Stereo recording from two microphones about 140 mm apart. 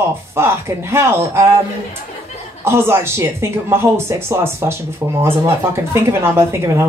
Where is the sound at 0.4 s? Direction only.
20° right (ahead or behind).